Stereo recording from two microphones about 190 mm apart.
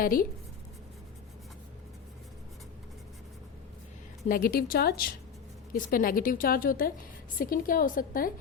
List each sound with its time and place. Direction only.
0.0 s a woman's voice: 50° left (ahead or behind)
4.3 s a woman's voice: 50° left (ahead or behind)